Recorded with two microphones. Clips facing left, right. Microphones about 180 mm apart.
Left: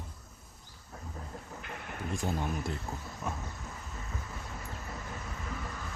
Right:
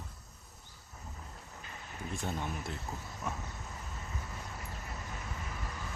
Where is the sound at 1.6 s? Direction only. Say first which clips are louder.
Left 3 dB; 65° left (ahead or behind).